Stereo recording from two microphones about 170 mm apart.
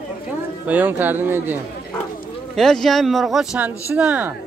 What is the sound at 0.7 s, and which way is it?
Speech, 10° right (ahead or behind).